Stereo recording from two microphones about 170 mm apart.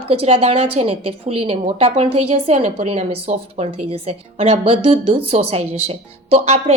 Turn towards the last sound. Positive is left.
turn(degrees=-40)  # may be behind; listen again after turning